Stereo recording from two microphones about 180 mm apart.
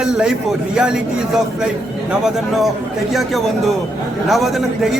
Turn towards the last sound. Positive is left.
turn(degrees=0)  # may be behind; listen again after turning